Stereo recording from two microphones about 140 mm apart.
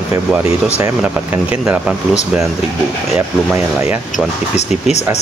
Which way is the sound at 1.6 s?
10° right (ahead or behind).